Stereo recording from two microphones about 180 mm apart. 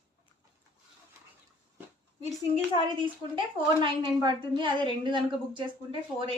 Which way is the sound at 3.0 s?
30° right (ahead or behind).